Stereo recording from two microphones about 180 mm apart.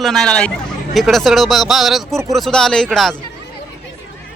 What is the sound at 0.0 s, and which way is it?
Speech, centre (ahead or behind).